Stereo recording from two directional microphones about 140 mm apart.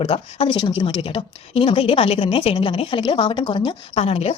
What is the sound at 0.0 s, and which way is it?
Speech, 40° left (ahead or behind).